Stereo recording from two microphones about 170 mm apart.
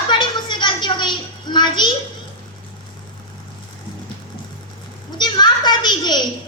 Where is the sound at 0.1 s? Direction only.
30° left (ahead or behind).